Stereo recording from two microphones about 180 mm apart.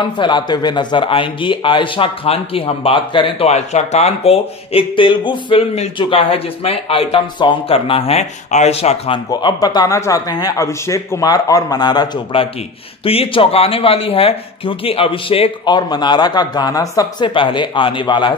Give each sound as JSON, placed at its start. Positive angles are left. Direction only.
{"t": 0.0, "sound": "speech", "side_deg": 25}
{"t": 9.3, "sound": "speech", "side_deg": 20}